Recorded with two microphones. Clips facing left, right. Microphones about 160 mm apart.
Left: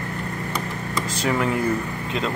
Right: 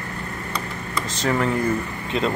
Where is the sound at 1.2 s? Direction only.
5° left (ahead or behind).